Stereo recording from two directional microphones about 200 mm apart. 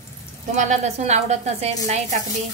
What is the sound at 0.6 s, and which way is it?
A woman's voice, 35° right (ahead or behind).